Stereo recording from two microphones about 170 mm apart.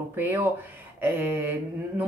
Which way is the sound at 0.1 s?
10° right (ahead or behind).